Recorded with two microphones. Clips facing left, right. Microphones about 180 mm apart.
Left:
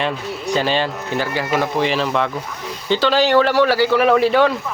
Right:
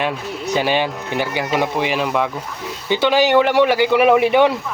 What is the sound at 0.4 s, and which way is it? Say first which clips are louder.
Speech: right 1 dB; 10° right (ahead or behind).